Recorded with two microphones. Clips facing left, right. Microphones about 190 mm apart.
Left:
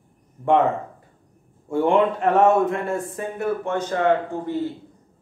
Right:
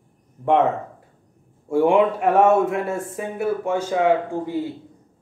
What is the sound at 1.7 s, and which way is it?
Speech, 5° right (ahead or behind).